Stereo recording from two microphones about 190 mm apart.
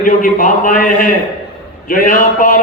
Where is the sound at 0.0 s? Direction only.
45° left (ahead or behind).